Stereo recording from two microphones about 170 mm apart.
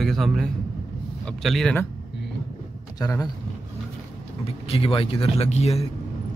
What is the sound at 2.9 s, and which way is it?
Speech, 20° left (ahead or behind).